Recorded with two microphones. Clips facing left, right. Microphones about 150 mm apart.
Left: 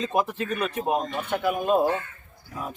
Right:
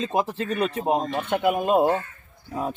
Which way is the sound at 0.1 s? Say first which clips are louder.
Right 1 dB; 25° right (ahead or behind).